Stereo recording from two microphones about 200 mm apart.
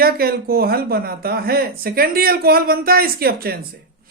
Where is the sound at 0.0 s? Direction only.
50° right (ahead or behind).